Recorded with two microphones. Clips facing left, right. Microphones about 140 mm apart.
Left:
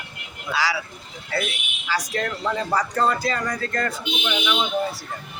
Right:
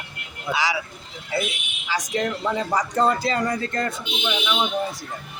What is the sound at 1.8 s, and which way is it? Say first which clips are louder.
Speech: right 1 dB; 20° right (ahead or behind).